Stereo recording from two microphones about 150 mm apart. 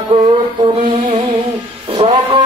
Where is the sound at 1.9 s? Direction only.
35° right (ahead or behind).